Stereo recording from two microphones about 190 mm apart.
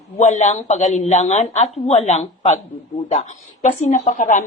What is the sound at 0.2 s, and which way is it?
A woman's voice, 35° left (ahead or behind).